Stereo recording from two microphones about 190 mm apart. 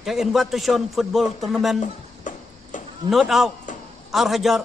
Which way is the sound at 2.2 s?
40° left (ahead or behind).